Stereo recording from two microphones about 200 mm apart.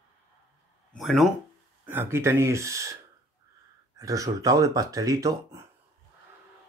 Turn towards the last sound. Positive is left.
turn(degrees=-15)  # may be behind; listen again after turning